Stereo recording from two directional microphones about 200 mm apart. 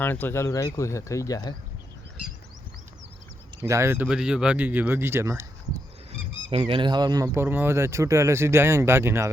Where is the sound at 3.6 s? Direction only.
15° right (ahead or behind).